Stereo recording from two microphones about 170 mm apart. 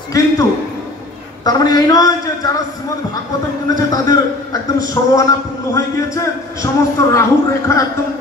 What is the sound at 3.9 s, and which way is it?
A man's voice, 20° left (ahead or behind).